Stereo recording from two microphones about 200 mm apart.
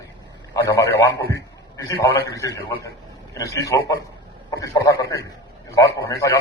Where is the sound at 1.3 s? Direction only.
15° left (ahead or behind).